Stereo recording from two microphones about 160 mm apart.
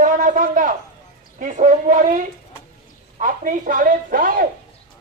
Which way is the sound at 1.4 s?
50° right (ahead or behind).